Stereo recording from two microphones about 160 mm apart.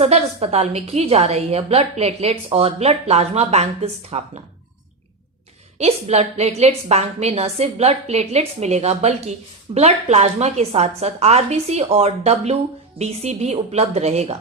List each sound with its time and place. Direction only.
0.0 s a woman's voice: 40° right (ahead or behind)
5.8 s a woman's voice: 40° right (ahead or behind)